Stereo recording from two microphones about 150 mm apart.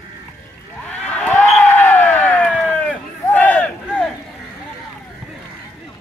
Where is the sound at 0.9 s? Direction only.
10° left (ahead or behind).